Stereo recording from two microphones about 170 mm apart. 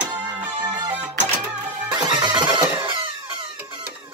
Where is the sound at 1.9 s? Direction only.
25° right (ahead or behind).